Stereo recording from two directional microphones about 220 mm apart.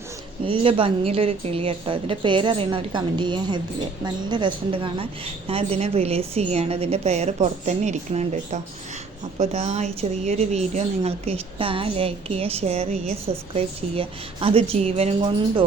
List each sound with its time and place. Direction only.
0.4 s a woman's voice: 25° right (ahead or behind)